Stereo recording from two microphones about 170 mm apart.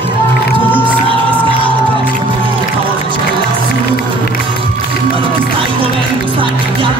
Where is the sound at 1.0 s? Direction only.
30° right (ahead or behind).